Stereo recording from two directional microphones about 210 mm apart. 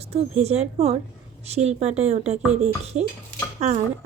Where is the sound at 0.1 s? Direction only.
30° right (ahead or behind).